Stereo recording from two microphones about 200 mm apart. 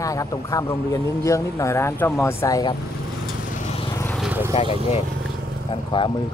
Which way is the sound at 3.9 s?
10° left (ahead or behind).